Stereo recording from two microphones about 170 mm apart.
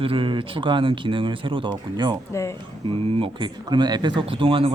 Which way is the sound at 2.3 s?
15° left (ahead or behind).